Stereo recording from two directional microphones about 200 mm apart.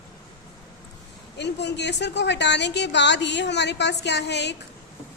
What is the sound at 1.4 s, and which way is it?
A woman's voice, 60° left (ahead or behind).